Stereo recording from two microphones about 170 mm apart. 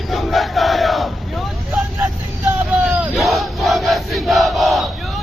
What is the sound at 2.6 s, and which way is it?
Battle cry, 10° right (ahead or behind).